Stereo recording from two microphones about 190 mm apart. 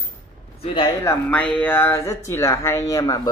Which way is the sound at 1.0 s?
10° left (ahead or behind).